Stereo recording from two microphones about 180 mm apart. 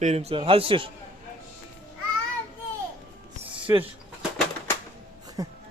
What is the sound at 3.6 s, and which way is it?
Speech, 30° right (ahead or behind).